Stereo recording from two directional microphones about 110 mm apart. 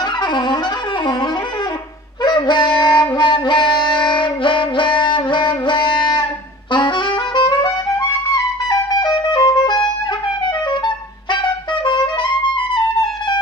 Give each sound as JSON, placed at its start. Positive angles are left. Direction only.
{"t": 0.2, "sound": "wind instrument", "side_deg": 40}
{"t": 2.2, "sound": "music", "side_deg": 40}
{"t": 6.7, "sound": "saxophone", "side_deg": 45}
{"t": 8.6, "sound": "music", "side_deg": 35}
{"t": 11.8, "sound": "music", "side_deg": 45}